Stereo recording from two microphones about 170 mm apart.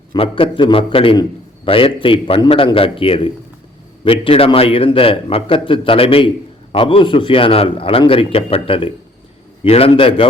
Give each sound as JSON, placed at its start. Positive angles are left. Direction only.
{"t": 0.1, "sound": "a man's voice", "side_deg": 30}